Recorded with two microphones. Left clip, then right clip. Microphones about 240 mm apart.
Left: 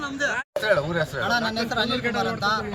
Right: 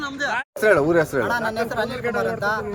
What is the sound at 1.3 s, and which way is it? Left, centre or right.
Speech, centre.